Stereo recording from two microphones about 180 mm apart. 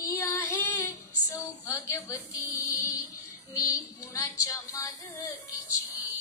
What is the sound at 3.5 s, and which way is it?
Female singing, 20° left (ahead or behind).